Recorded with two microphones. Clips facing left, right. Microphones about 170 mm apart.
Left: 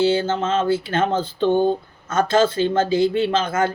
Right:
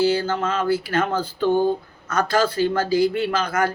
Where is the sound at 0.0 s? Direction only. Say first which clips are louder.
Left 1 dB; 25° left (ahead or behind).